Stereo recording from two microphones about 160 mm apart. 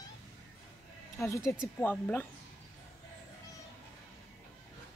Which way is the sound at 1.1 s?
20° left (ahead or behind).